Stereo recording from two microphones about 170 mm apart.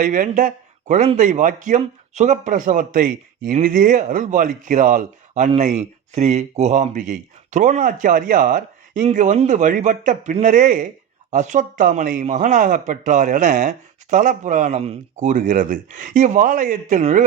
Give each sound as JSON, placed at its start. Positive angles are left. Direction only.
{"t": 0.0, "sound": "speech", "side_deg": -50}